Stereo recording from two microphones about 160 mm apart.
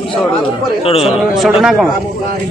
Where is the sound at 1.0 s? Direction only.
5° right (ahead or behind).